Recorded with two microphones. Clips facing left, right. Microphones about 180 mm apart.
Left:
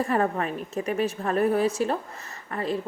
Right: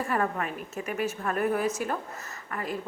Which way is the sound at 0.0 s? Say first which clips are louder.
Left 4 dB; 35° left (ahead or behind).